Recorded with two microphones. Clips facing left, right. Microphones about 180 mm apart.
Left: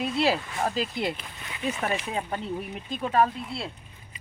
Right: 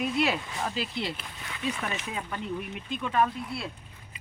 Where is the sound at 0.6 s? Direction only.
45° left (ahead or behind).